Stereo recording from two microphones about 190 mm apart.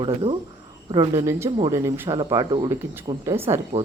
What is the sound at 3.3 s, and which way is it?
Speech, 15° right (ahead or behind).